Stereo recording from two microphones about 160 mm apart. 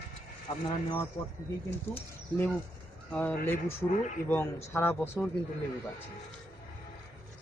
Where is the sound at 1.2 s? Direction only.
25° left (ahead or behind).